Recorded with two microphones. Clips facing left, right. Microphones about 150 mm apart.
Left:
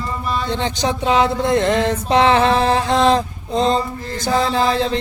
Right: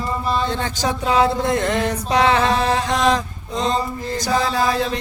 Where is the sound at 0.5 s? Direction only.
20° left (ahead or behind).